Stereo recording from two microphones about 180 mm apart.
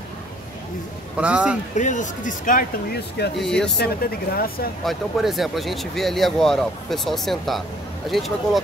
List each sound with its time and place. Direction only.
1.1 s a man's voice: 5° right (ahead or behind)
1.8 s speech: 45° left (ahead or behind)
3.3 s speech: 5° left (ahead or behind)
3.7 s speech: 60° left (ahead or behind)
4.8 s speech: centre (ahead or behind)